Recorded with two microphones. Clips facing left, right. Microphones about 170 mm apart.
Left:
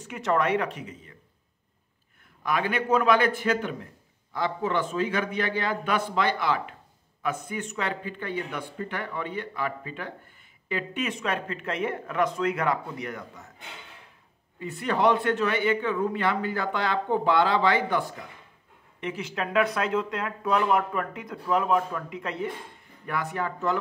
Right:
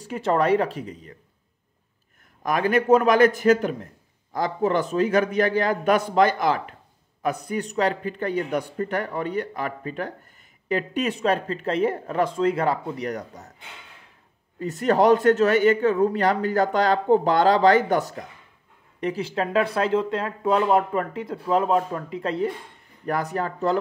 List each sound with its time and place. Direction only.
0.0 s a man's voice: 30° right (ahead or behind)
2.4 s a man's voice: 40° right (ahead or behind)
14.6 s a man's voice: 40° right (ahead or behind)